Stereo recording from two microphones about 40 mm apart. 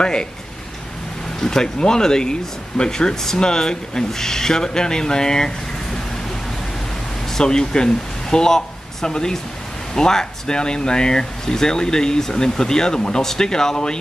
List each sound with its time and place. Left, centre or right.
0.0 s speech: left
1.4 s speech: centre
7.3 s speech: centre